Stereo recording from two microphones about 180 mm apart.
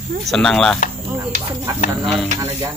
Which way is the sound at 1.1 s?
15° right (ahead or behind).